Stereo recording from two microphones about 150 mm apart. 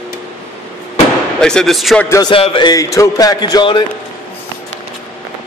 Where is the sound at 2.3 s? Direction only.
35° left (ahead or behind).